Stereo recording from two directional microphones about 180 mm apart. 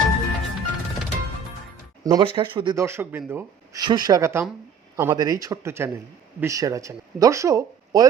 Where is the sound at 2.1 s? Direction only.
25° right (ahead or behind).